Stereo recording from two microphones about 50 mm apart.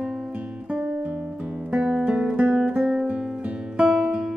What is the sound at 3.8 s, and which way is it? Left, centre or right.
Music, centre.